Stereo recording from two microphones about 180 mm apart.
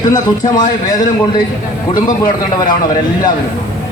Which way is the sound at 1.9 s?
50° left (ahead or behind).